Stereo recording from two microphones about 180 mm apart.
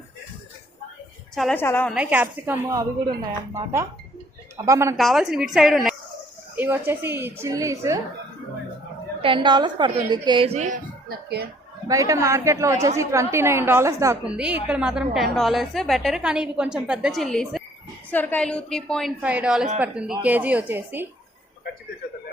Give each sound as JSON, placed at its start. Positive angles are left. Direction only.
{"t": 1.4, "sound": "a woman's voice", "side_deg": 5}
{"t": 1.9, "sound": "a woman's voice", "side_deg": -5}
{"t": 4.5, "sound": "a woman's voice", "side_deg": -15}
{"t": 4.9, "sound": "a woman's voice", "side_deg": 0}
{"t": 9.2, "sound": "a woman's voice", "side_deg": -25}
{"t": 11.9, "sound": "a woman's voice", "side_deg": -20}